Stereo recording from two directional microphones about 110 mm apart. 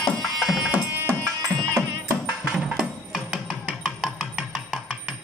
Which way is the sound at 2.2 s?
5° right (ahead or behind).